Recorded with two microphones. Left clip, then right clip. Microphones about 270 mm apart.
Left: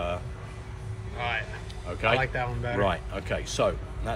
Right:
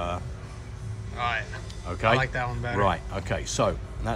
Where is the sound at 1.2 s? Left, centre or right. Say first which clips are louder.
Right 2 dB; centre.